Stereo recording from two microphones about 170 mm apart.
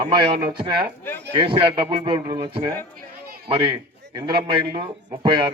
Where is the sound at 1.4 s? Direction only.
30° right (ahead or behind).